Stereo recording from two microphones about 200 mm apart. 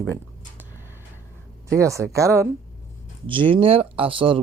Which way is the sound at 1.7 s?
15° right (ahead or behind).